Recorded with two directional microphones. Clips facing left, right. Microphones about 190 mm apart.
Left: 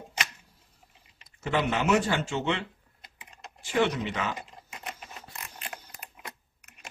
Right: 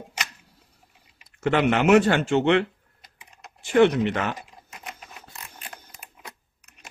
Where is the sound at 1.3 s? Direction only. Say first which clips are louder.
Right 7 dB; 70° right (ahead or behind).